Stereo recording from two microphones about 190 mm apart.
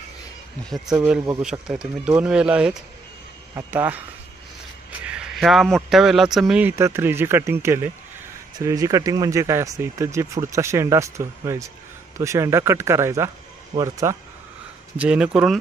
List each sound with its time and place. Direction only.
1.4 s speech: 5° right (ahead or behind)
5.0 s speech: 5° right (ahead or behind)
15.0 s speech: 5° right (ahead or behind)